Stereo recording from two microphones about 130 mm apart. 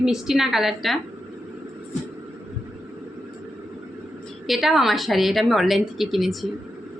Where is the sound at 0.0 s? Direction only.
5° right (ahead or behind).